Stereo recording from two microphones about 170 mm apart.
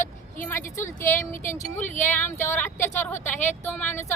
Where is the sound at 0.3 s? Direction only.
15° left (ahead or behind).